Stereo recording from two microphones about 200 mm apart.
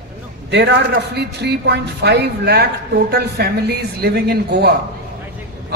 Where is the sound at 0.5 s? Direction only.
60° right (ahead or behind).